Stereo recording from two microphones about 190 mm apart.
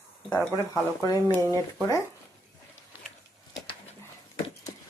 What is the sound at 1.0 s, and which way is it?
Speech, 20° left (ahead or behind).